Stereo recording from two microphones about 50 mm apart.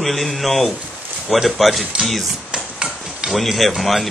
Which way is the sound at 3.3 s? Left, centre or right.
Centre.